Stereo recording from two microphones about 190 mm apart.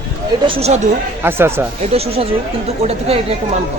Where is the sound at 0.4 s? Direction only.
35° right (ahead or behind).